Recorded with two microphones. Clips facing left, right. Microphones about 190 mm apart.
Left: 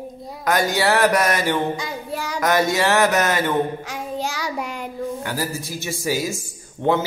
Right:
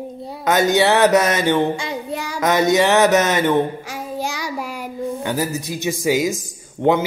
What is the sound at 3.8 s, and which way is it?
Child singing, 10° right (ahead or behind).